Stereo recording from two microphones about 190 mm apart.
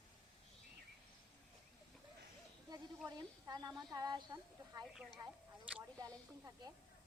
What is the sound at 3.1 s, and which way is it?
Speech, 20° right (ahead or behind).